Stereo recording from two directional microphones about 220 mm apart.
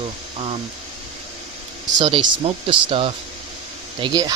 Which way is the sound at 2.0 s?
20° right (ahead or behind).